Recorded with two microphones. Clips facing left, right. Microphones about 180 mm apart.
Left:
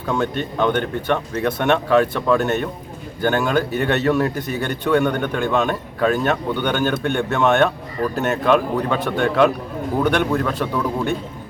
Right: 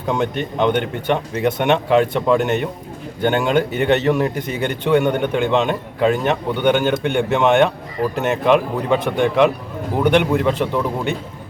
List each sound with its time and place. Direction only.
0.1 s a man's voice: 15° right (ahead or behind)